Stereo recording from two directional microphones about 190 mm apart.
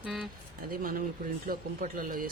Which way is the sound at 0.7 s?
50° right (ahead or behind).